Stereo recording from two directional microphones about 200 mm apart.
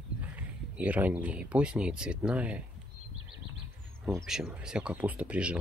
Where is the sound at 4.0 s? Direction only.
15° right (ahead or behind).